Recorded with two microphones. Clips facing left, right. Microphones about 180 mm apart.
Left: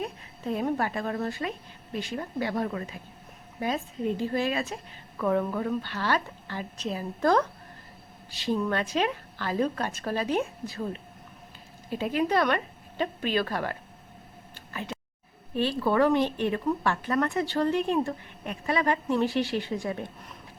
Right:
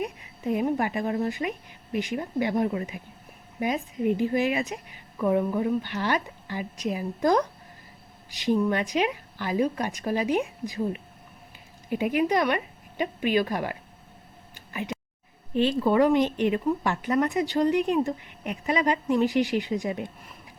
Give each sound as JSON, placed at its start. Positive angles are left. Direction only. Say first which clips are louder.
{"t": 0.0, "sound": "a woman's voice", "louder": "right 3 dB", "side_deg": -15}
{"t": 14.5, "sound": "a sound", "louder": "right 3 dB", "side_deg": -15}
{"t": 15.5, "sound": "speech", "louder": "right 3 dB", "side_deg": -20}